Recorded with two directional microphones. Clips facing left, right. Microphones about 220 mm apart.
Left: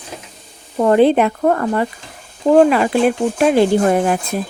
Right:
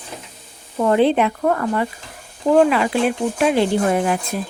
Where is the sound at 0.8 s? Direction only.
45° left (ahead or behind).